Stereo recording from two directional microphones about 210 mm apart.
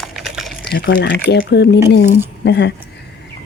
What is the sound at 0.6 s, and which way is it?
Speech, 45° left (ahead or behind).